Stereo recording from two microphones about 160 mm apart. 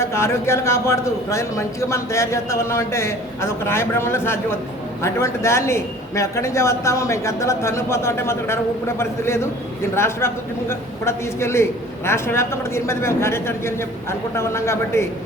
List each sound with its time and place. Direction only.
0.0 s a man's voice: 15° left (ahead or behind)